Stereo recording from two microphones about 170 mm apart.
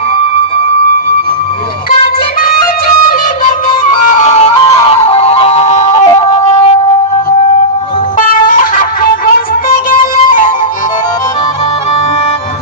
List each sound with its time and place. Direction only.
3.4 s music: 45° left (ahead or behind); by 6.7 s 30° left (ahead or behind)
8.2 s music: 50° left (ahead or behind)